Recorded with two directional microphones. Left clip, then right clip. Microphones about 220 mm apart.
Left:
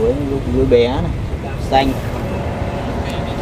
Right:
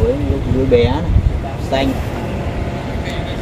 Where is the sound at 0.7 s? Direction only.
25° left (ahead or behind).